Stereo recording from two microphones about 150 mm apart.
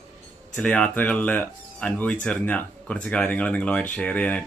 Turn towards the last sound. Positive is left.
turn(degrees=10)  # may be behind; listen again after turning